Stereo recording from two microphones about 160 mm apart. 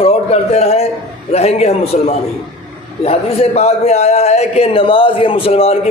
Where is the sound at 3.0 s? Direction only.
40° left (ahead or behind).